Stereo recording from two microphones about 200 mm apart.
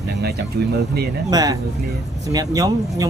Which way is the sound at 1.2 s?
20° right (ahead or behind).